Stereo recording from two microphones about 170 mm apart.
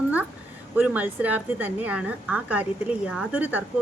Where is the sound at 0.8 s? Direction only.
10° right (ahead or behind).